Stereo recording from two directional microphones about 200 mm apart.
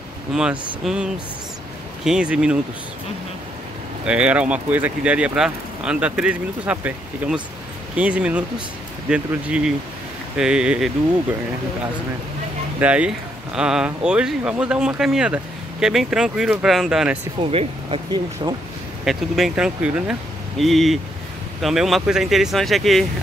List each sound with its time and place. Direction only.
0.3 s speech: 5° right (ahead or behind)
4.0 s speech: 5° right (ahead or behind)
12.8 s speech: 5° right (ahead or behind)
17.4 s speech: 30° right (ahead or behind)
19.0 s speech: centre (ahead or behind)